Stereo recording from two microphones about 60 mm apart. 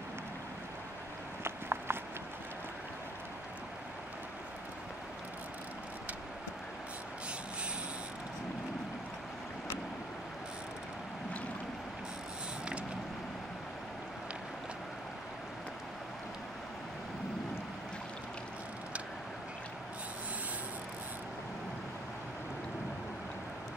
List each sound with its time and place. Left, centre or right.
1.4 s horse: right